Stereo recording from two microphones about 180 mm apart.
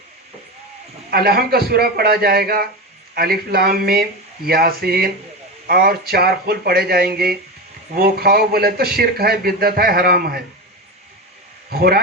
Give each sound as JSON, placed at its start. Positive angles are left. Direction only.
{"t": 1.1, "sound": "speech", "side_deg": -60}
{"t": 11.7, "sound": "speech", "side_deg": -60}